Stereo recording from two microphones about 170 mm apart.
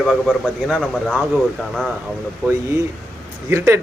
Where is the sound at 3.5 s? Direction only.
15° right (ahead or behind).